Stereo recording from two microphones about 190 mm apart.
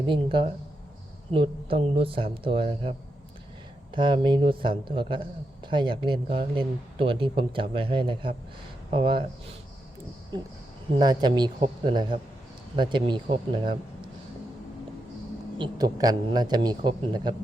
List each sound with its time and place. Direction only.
0.1 s speech: 25° right (ahead or behind)
3.9 s speech: 25° right (ahead or behind)
10.9 s speech: 20° right (ahead or behind)
15.5 s speech: 25° right (ahead or behind)